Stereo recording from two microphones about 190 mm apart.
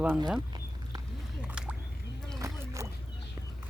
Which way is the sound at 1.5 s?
5° right (ahead or behind).